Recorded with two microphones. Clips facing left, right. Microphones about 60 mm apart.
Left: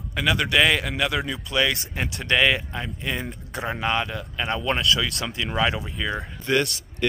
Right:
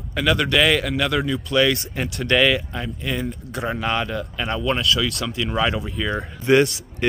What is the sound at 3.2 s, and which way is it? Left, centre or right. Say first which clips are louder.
Speech: right 4 dB; left.